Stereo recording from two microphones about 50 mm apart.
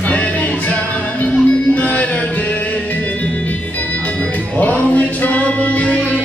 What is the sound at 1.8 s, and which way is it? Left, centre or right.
Music, left.